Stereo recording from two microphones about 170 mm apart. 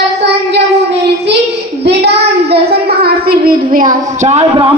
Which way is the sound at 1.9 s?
75° right (ahead or behind).